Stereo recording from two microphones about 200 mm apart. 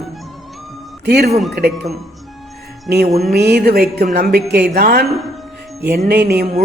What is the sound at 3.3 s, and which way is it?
A man's voice, 55° right (ahead or behind).